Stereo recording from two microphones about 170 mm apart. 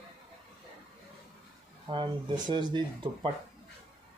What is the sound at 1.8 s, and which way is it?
Speech, 30° right (ahead or behind).